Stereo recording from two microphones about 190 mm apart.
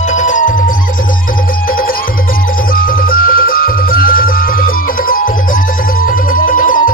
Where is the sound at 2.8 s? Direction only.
50° left (ahead or behind).